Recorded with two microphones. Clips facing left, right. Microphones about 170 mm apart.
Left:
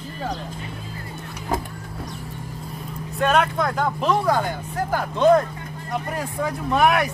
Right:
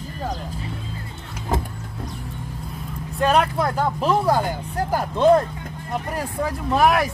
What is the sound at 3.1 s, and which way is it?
Speech, 5° right (ahead or behind).